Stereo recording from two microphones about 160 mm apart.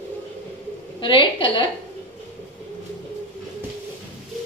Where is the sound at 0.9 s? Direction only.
30° left (ahead or behind).